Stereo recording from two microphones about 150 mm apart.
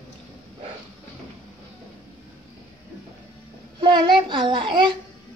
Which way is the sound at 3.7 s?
30° right (ahead or behind).